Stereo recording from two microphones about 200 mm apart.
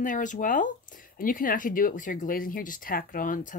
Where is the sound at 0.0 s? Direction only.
40° left (ahead or behind).